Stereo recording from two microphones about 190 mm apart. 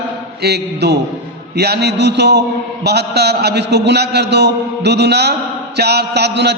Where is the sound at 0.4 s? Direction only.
60° right (ahead or behind).